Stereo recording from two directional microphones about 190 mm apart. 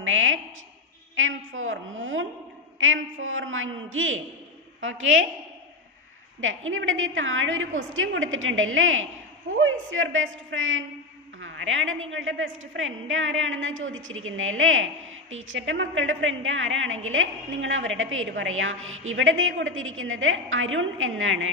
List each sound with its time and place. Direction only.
0.0 s a woman's voice: 90° right
6.4 s a woman's voice: 90° right